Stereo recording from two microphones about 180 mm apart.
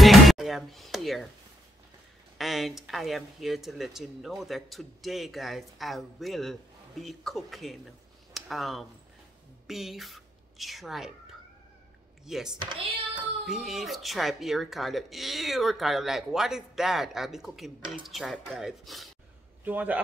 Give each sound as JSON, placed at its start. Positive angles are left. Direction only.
{"t": 0.0, "sound": "music", "side_deg": 0}
{"t": 2.3, "sound": "a woman's voice", "side_deg": 0}